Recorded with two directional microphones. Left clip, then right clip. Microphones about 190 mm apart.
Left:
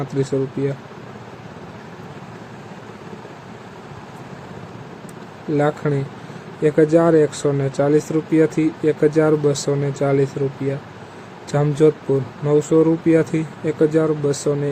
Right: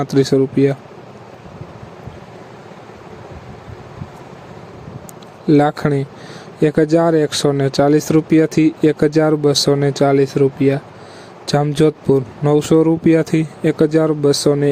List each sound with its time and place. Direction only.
0.0 s speech: 45° right (ahead or behind)
5.5 s speech: 55° right (ahead or behind)